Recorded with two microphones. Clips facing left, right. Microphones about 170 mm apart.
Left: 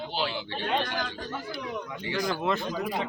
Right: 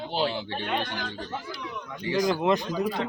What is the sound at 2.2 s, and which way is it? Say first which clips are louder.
Speech: right 5 dB; 20° right (ahead or behind).